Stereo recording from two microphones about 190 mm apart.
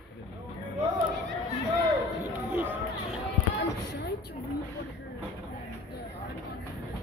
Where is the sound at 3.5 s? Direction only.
60° left (ahead or behind).